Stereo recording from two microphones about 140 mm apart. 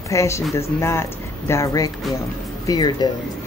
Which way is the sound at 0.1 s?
20° left (ahead or behind).